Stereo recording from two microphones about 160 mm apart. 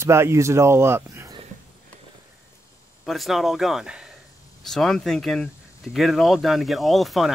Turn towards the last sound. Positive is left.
turn(degrees=0)  # may be behind; listen again after turning